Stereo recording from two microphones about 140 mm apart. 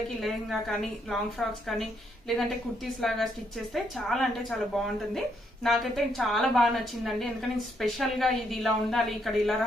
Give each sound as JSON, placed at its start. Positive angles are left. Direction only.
{"t": 0.2, "sound": "a woman's voice", "side_deg": 0}